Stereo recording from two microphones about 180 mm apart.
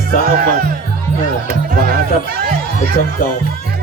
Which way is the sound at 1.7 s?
55° right (ahead or behind).